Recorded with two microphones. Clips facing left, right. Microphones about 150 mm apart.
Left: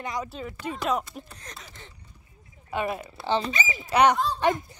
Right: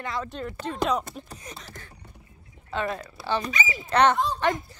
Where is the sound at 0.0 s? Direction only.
15° left (ahead or behind).